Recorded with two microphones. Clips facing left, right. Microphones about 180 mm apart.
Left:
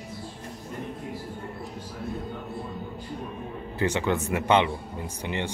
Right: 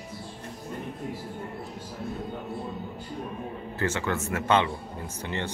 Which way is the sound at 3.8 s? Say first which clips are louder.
Left 3 dB; 15° left (ahead or behind).